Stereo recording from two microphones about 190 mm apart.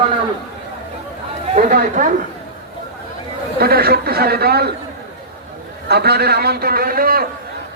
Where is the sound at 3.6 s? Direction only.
55° right (ahead or behind).